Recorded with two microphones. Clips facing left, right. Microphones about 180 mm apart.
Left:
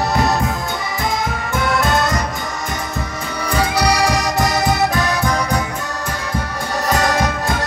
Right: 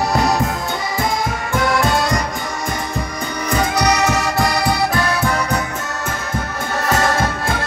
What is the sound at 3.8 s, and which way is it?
Music, 10° left (ahead or behind).